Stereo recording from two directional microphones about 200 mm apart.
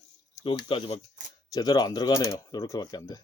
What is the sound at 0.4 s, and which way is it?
Speech, 25° left (ahead or behind).